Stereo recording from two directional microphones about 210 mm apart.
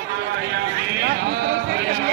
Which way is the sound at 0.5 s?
50° right (ahead or behind).